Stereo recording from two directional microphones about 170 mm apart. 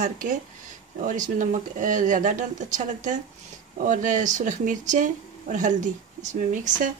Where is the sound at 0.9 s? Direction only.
50° right (ahead or behind).